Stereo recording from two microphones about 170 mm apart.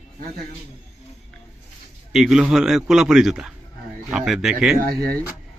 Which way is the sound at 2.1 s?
Centre (ahead or behind).